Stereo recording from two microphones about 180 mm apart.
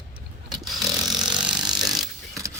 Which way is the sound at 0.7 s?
Centre (ahead or behind).